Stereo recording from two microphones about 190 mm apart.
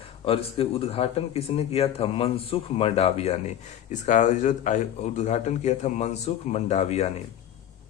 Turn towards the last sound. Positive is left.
turn(degrees=35)  # may be behind; listen again after turning